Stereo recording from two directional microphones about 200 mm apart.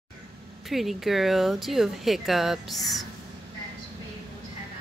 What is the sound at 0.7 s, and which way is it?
Speech, centre (ahead or behind).